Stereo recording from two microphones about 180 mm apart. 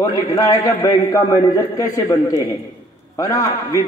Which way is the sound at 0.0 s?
20° left (ahead or behind).